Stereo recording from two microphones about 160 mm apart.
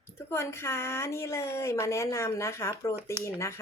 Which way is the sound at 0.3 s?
15° left (ahead or behind).